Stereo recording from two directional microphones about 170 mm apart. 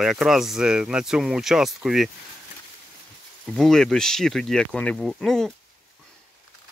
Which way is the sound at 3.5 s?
Centre (ahead or behind).